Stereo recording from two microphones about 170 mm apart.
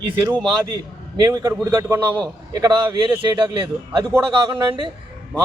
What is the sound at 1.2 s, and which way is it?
A man's voice, 20° right (ahead or behind).